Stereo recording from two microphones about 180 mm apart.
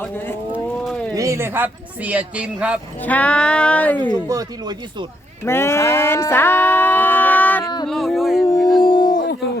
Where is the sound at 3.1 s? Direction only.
10° left (ahead or behind).